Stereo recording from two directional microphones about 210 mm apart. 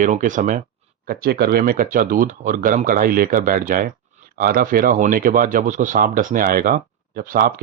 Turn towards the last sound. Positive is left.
turn(degrees=-45)  # may be behind; listen again after turning